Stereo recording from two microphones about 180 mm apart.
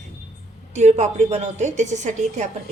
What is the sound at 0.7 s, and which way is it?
A woman's voice, 40° right (ahead or behind).